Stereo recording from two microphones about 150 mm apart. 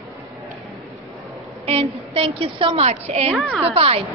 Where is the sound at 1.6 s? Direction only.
40° right (ahead or behind).